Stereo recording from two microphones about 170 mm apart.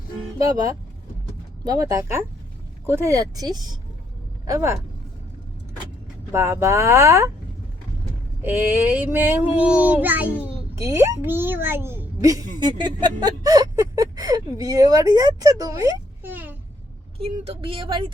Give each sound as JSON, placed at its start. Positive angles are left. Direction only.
{"t": 0.3, "sound": "speech", "side_deg": -20}
{"t": 4.4, "sound": "child singing", "side_deg": -20}
{"t": 6.3, "sound": "child singing", "side_deg": -15}
{"t": 8.4, "sound": "child singing", "side_deg": -10}
{"t": 10.8, "sound": "speech", "side_deg": -20}
{"t": 17.2, "sound": "speech", "side_deg": -35}